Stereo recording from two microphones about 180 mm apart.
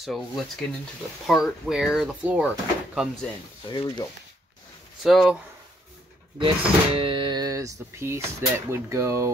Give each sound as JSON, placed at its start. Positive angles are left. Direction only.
{"t": 0.0, "sound": "speech", "side_deg": 0}
{"t": 3.6, "sound": "speech", "side_deg": 25}
{"t": 5.0, "sound": "speech", "side_deg": 0}
{"t": 6.4, "sound": "speech", "side_deg": -30}